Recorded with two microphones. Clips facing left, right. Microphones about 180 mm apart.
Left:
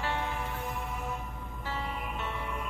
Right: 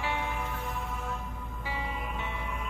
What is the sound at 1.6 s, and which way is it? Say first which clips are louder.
Music: even; 15° right (ahead or behind).